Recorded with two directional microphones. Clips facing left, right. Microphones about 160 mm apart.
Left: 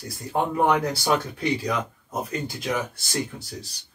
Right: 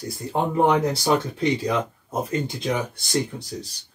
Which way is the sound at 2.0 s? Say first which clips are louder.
Right 4 dB; 25° right (ahead or behind).